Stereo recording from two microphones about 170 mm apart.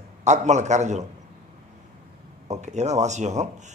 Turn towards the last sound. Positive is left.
turn(degrees=-45)  # may be behind; listen again after turning